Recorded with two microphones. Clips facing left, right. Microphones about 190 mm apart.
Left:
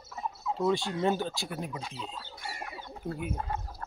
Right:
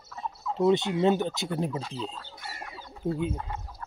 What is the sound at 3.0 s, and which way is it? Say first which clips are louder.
Speech: right 7 dB; 25° right (ahead or behind).